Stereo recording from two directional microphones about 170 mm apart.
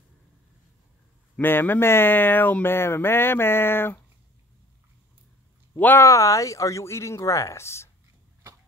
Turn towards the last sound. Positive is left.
turn(degrees=15)  # may be behind; listen again after turning